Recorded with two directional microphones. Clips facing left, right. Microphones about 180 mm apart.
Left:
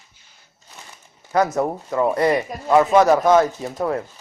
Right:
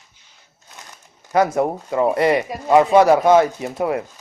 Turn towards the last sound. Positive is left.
turn(degrees=-15)  # may be behind; listen again after turning